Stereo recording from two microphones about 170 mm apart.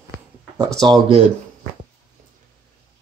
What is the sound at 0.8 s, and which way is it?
Speech, 30° right (ahead or behind).